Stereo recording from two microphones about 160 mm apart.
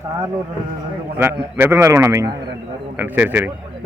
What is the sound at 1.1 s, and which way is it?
A man's voice, 15° right (ahead or behind).